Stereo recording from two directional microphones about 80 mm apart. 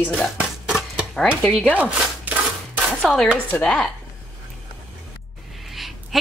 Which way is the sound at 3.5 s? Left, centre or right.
Centre.